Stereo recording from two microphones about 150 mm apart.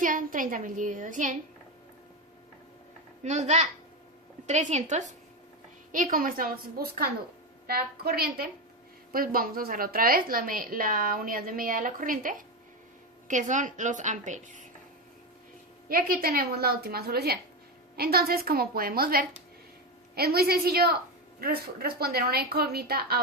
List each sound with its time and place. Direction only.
0.0 s a woman's voice: 65° right (ahead or behind)
3.2 s a woman's voice: 50° right (ahead or behind)
5.9 s a woman's voice: 65° right (ahead or behind); by 8.4 s 90° right
9.1 s a woman's voice: 75° right (ahead or behind); by 14.7 s 55° right (ahead or behind)
15.9 s a woman's voice: 70° right (ahead or behind)
20.1 s a woman's voice: 90° right